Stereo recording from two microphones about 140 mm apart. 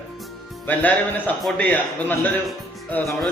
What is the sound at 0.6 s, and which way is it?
A man's voice, 15° left (ahead or behind).